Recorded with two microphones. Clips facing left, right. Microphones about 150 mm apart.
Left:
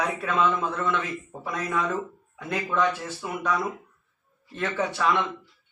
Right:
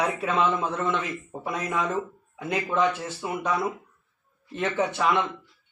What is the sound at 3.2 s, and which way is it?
A man's voice, 20° right (ahead or behind).